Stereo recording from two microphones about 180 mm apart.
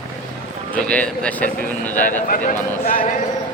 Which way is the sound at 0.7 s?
5° left (ahead or behind).